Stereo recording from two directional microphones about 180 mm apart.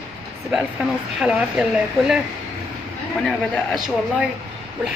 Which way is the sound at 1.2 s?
5° right (ahead or behind).